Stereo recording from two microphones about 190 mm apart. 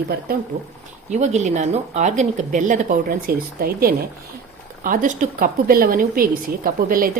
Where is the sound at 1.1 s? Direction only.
40° right (ahead or behind).